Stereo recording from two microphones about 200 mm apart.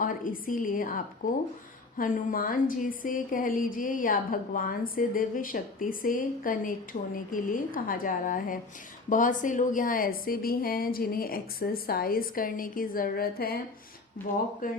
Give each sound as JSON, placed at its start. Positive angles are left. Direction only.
{"t": 0.0, "sound": "a woman's voice", "side_deg": 40}